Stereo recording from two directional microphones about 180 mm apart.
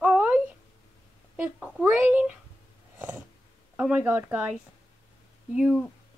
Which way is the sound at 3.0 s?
10° right (ahead or behind).